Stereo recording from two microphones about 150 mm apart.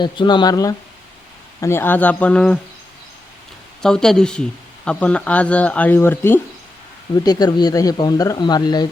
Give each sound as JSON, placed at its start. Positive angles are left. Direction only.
{"t": 0.0, "sound": "speech", "side_deg": 30}
{"t": 3.8, "sound": "speech", "side_deg": 5}
{"t": 7.3, "sound": "speech", "side_deg": 25}